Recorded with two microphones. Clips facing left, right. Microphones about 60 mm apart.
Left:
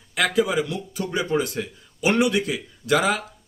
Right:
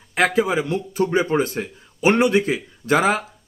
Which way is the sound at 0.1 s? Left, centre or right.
Right.